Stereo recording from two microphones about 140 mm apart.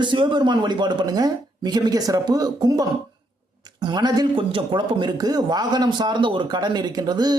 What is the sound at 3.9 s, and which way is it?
Speech, 30° right (ahead or behind).